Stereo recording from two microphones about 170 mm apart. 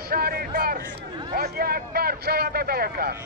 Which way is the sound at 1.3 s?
65° right (ahead or behind).